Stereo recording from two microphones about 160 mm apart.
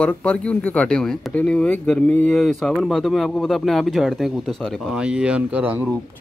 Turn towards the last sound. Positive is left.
turn(degrees=-10)  # may be behind; listen again after turning